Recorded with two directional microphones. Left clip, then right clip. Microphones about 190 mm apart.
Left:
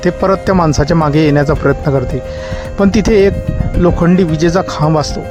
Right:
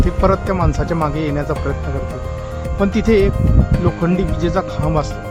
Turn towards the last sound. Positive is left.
turn(degrees=35)  # may be behind; listen again after turning